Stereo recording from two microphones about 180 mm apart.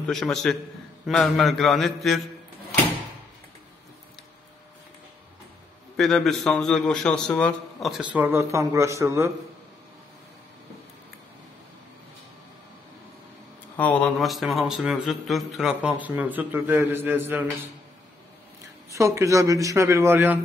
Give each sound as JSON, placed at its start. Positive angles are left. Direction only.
{"t": 0.0, "sound": "speech", "side_deg": 0}
{"t": 5.9, "sound": "speech", "side_deg": 0}
{"t": 13.7, "sound": "speech", "side_deg": 10}
{"t": 18.9, "sound": "a man's voice", "side_deg": -15}